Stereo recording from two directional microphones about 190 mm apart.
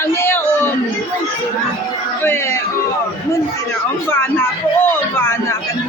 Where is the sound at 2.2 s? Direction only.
10° left (ahead or behind).